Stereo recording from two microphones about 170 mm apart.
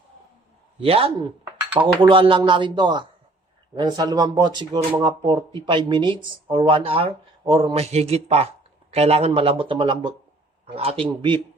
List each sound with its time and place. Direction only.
0.8 s speech: 35° right (ahead or behind)